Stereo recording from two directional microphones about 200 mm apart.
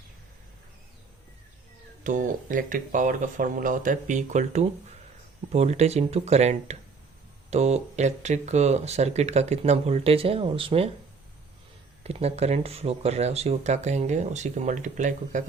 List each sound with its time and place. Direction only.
2.0 s speech: 40° right (ahead or behind)
12.0 s speech: 30° right (ahead or behind)